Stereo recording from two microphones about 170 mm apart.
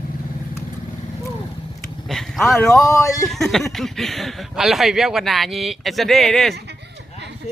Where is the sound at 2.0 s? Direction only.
Centre (ahead or behind).